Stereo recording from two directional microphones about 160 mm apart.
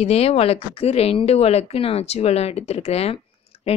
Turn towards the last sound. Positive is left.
turn(degrees=35)  # may be behind; listen again after turning